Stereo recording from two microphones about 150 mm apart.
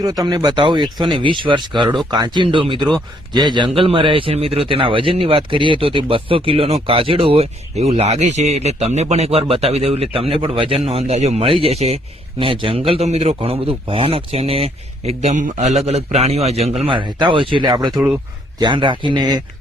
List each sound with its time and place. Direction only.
0.0 s a man's voice: 25° right (ahead or behind)